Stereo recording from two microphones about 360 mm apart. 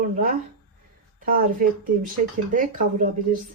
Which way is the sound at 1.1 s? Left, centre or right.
Right.